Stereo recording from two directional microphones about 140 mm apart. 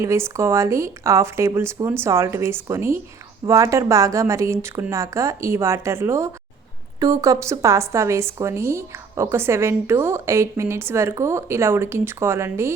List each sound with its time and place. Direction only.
0.0 s a woman's voice: 20° right (ahead or behind)